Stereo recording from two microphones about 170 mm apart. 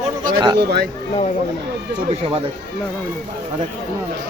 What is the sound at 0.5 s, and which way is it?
Speech, 70° right (ahead or behind).